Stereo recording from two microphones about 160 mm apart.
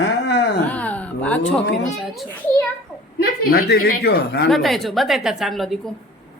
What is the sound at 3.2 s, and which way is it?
A woman's voice, 70° left (ahead or behind).